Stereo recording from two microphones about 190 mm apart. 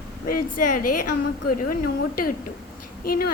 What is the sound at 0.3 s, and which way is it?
Speech, 50° left (ahead or behind).